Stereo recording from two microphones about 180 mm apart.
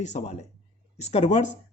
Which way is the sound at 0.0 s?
40° left (ahead or behind).